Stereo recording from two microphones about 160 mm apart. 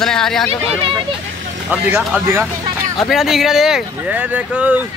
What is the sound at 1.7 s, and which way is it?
Speech, 5° right (ahead or behind).